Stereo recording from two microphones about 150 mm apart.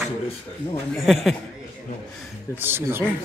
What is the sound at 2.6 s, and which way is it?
Speech, 15° right (ahead or behind).